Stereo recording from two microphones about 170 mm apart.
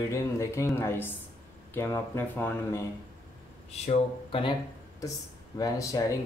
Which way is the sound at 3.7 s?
40° left (ahead or behind).